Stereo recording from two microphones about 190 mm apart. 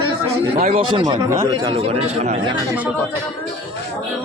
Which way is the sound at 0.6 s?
35° right (ahead or behind).